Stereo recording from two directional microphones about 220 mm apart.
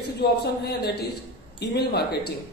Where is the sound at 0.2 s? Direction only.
45° left (ahead or behind).